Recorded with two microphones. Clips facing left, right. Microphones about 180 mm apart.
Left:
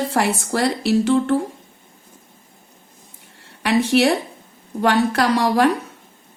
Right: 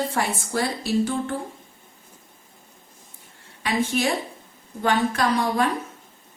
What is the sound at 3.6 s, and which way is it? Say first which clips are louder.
A woman's voice: left 7 dB; 75° left (ahead or behind).